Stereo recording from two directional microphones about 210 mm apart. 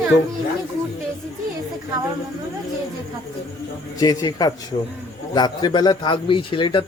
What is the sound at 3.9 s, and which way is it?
A man's voice, 20° left (ahead or behind).